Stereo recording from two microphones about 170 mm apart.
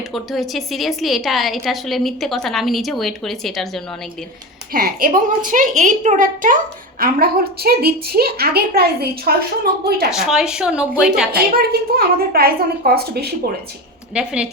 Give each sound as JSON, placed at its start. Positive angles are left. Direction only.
{"t": 0.1, "sound": "a woman's voice", "side_deg": 0}
{"t": 4.7, "sound": "a child's voice", "side_deg": -60}
{"t": 7.0, "sound": "a woman's voice", "side_deg": -65}
{"t": 10.1, "sound": "a woman's voice", "side_deg": -5}
{"t": 11.5, "sound": "a woman's voice", "side_deg": -65}
{"t": 14.1, "sound": "a woman's voice", "side_deg": -5}